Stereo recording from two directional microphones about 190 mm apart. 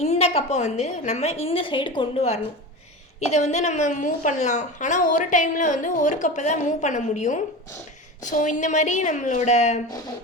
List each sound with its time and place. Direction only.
0.0 s a woman's voice: 35° left (ahead or behind)